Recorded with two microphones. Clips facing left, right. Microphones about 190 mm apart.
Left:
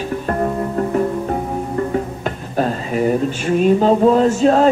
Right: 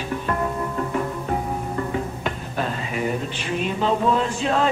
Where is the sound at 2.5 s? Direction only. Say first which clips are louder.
Left 10 dB; 40° left (ahead or behind).